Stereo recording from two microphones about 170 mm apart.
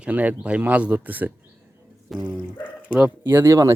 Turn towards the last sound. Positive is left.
turn(degrees=-15)  # may be behind; listen again after turning